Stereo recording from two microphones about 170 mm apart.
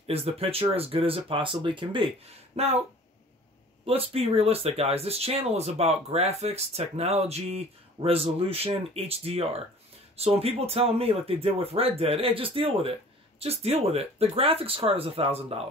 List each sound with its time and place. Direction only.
0.0 s speech: 35° right (ahead or behind)
3.8 s speech: 35° right (ahead or behind)